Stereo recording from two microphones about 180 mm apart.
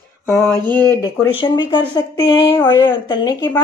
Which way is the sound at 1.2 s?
25° left (ahead or behind).